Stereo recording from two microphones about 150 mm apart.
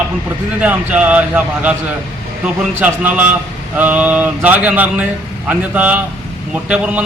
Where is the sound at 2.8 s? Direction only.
10° right (ahead or behind).